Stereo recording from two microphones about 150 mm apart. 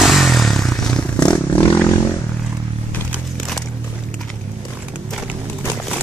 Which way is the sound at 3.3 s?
Centre (ahead or behind).